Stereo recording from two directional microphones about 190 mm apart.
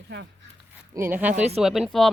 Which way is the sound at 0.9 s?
10° right (ahead or behind).